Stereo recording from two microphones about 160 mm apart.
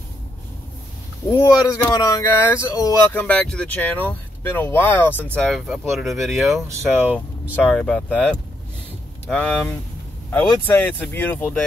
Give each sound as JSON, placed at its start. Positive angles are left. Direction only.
{"t": 1.3, "sound": "speech", "side_deg": 20}
{"t": 3.2, "sound": "speech", "side_deg": 5}
{"t": 7.2, "sound": "speech", "side_deg": 10}